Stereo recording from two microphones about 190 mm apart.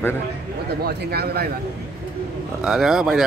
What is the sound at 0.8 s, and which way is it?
Speech, 55° right (ahead or behind).